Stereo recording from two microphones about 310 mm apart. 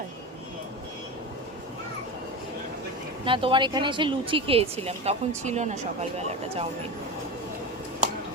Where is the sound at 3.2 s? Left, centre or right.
Centre.